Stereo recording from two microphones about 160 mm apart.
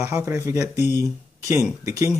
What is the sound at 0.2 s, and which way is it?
Speech, 20° right (ahead or behind).